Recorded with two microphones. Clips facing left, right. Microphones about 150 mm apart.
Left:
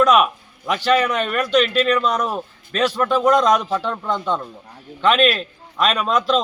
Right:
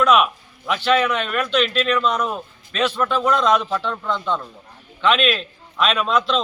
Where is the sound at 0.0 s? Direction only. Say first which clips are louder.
Left 2 dB; 40° left (ahead or behind).